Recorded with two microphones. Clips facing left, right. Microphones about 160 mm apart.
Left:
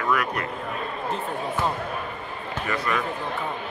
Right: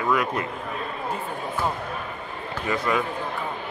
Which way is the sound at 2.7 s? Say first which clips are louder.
Right 3 dB; 20° right (ahead or behind).